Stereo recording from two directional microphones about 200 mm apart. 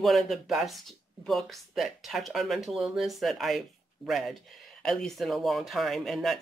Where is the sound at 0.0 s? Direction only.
Centre (ahead or behind).